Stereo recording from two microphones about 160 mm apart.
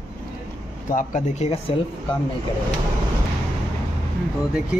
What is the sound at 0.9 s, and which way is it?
Speech, 55° left (ahead or behind).